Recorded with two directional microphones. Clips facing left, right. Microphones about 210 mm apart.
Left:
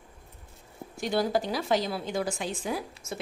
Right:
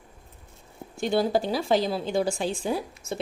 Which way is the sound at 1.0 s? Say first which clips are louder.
Right 3 dB; 25° right (ahead or behind).